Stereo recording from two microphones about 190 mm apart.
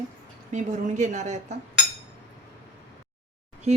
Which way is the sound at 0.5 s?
40° right (ahead or behind).